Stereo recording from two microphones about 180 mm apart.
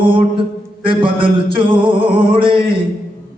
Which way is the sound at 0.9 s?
30° right (ahead or behind).